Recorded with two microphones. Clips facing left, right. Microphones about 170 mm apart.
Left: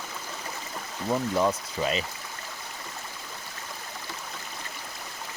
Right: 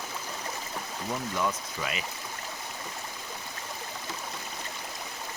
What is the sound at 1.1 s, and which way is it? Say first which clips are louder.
Speech: left 6 dB; 30° left (ahead or behind).